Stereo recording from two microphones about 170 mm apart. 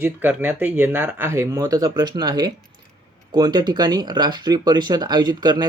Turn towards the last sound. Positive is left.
turn(degrees=-25)  # may be behind; listen again after turning